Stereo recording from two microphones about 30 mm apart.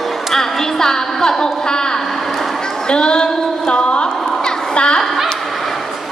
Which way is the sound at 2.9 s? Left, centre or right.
Left.